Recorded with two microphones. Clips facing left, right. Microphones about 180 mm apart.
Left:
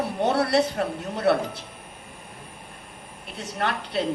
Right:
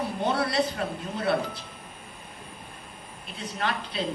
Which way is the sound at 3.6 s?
65° left (ahead or behind).